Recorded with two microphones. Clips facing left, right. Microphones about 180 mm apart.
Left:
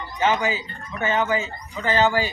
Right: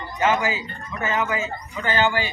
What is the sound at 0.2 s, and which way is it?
Speech, 30° left (ahead or behind).